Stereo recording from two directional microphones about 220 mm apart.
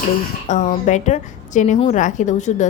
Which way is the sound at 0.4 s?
35° left (ahead or behind).